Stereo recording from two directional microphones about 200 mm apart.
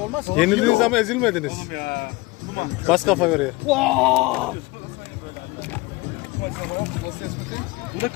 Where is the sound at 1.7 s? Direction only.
50° left (ahead or behind).